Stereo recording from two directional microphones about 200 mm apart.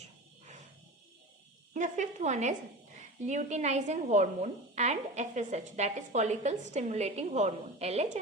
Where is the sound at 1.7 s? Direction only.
40° right (ahead or behind).